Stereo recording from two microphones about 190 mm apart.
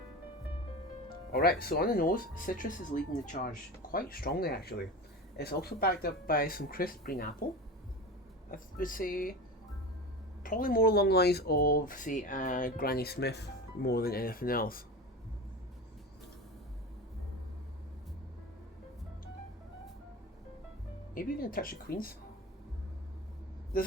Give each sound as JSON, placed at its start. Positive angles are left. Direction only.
{"t": 1.3, "sound": "speech", "side_deg": 55}
{"t": 8.4, "sound": "speech", "side_deg": 45}
{"t": 10.4, "sound": "speech", "side_deg": 45}
{"t": 21.2, "sound": "speech", "side_deg": 50}
{"t": 23.7, "sound": "speech", "side_deg": 50}